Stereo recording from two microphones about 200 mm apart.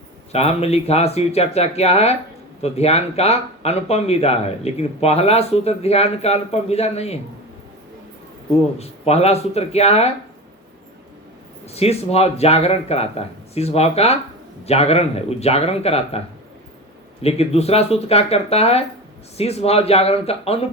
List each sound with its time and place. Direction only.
0.3 s speech: 30° left (ahead or behind)
8.8 s speech: 30° left (ahead or behind)
11.6 s speech: 30° left (ahead or behind)
17.2 s speech: 30° left (ahead or behind)